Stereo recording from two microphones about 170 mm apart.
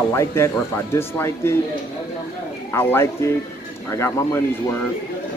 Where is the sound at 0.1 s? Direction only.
15° left (ahead or behind).